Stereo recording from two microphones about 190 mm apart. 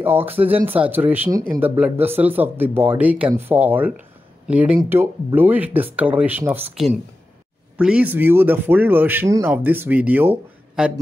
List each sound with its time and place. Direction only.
0.0 s speech: 10° right (ahead or behind)
7.7 s speech: 5° right (ahead or behind)